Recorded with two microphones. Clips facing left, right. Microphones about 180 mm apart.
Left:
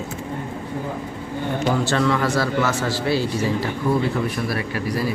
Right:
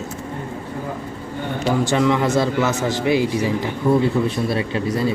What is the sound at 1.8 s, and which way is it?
Speech, 15° right (ahead or behind).